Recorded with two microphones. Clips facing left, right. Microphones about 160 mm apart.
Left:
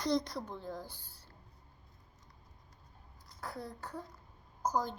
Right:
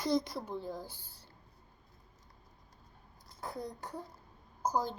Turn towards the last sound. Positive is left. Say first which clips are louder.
# right 1 dB
turn(degrees=-10)  # may be behind; listen again after turning